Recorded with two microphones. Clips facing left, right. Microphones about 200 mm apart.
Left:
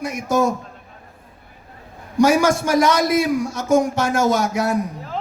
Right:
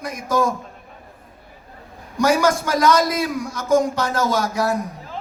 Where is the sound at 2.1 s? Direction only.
25° left (ahead or behind).